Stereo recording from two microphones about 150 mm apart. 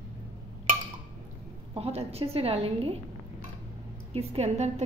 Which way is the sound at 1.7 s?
40° right (ahead or behind).